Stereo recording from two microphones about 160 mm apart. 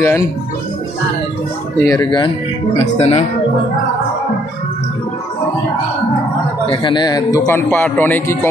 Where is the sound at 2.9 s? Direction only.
40° left (ahead or behind).